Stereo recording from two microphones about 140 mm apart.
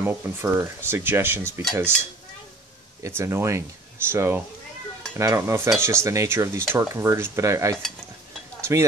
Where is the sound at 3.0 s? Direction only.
20° right (ahead or behind).